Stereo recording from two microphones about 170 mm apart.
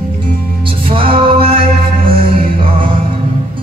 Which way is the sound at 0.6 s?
30° right (ahead or behind).